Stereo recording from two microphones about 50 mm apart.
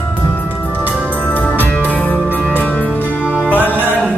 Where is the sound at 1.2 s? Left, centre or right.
Left.